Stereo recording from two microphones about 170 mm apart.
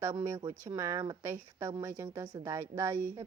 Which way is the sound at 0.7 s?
15° right (ahead or behind).